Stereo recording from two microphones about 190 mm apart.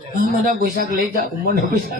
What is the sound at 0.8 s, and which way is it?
Speech, 55° right (ahead or behind).